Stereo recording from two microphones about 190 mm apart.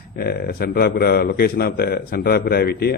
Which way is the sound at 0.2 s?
55° left (ahead or behind).